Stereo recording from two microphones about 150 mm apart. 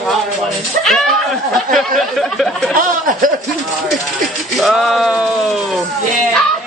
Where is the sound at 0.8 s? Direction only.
Centre (ahead or behind).